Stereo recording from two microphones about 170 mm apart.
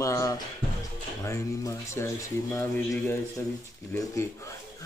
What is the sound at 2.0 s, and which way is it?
Speech, 15° left (ahead or behind).